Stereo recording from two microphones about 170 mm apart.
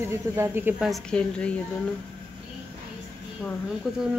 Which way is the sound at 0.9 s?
5° left (ahead or behind).